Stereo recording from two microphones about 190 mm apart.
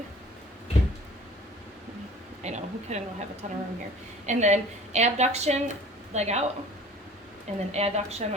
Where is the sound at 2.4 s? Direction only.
35° right (ahead or behind).